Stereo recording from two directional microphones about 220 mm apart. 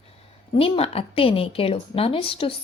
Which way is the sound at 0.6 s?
25° left (ahead or behind).